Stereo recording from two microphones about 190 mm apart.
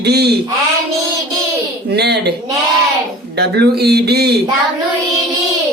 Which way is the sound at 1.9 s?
60° right (ahead or behind).